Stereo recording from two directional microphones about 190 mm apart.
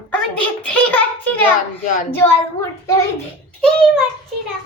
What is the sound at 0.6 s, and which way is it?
Speech, 5° left (ahead or behind).